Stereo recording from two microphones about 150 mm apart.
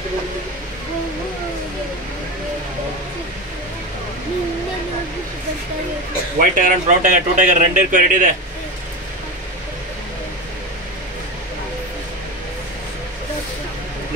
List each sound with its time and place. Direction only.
6.4 s speech: 60° right (ahead or behind)